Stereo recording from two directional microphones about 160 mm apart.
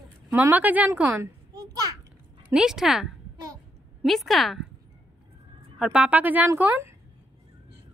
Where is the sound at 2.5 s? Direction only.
5° right (ahead or behind).